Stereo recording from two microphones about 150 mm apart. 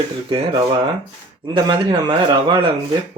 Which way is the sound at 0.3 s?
30° right (ahead or behind).